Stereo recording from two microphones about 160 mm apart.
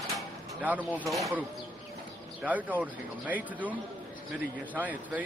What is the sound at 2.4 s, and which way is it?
Speech, 10° right (ahead or behind).